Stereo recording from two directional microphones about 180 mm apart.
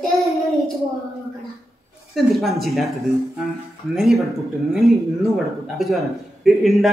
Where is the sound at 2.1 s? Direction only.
Centre (ahead or behind).